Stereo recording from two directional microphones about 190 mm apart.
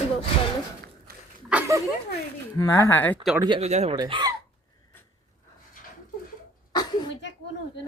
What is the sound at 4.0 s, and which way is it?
Speech, 20° right (ahead or behind).